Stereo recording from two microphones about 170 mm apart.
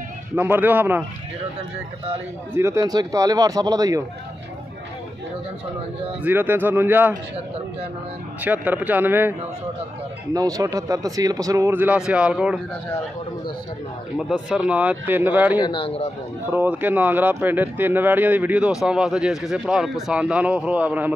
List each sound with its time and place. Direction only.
0.4 s speech: 10° right (ahead or behind)
2.5 s speech: 15° right (ahead or behind)
6.2 s speech: 10° right (ahead or behind)
8.4 s speech: 10° right (ahead or behind)
10.3 s speech: 20° right (ahead or behind)
14.1 s speech: 5° right (ahead or behind)
15.6 s speech: 30° left (ahead or behind)
16.4 s speech: 10° right (ahead or behind)